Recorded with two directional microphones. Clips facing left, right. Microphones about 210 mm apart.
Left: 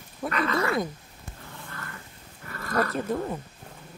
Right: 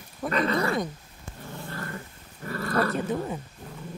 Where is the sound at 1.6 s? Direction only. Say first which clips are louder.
Right 8 dB; 35° right (ahead or behind).